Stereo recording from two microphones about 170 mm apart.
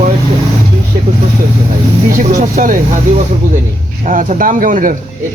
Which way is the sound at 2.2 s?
45° right (ahead or behind).